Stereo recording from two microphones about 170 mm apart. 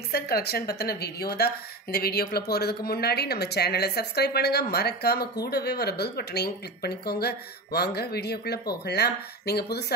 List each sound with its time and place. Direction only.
0.1 s a woman's voice: 65° left (ahead or behind)